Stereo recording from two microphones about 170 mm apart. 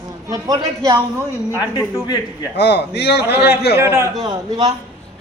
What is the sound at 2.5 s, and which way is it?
Speech, 80° left.